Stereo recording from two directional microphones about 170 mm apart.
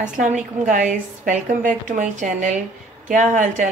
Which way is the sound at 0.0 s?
45° right (ahead or behind).